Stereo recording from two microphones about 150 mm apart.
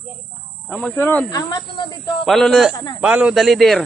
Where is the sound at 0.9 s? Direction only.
15° left (ahead or behind).